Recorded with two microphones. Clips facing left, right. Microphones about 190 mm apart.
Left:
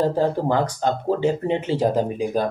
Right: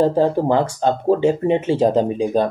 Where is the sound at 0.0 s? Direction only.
20° right (ahead or behind).